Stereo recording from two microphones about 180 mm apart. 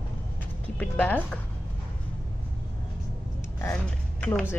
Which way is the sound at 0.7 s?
5° left (ahead or behind).